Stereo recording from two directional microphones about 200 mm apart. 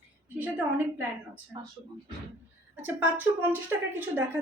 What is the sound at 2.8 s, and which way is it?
A woman's voice, 10° right (ahead or behind).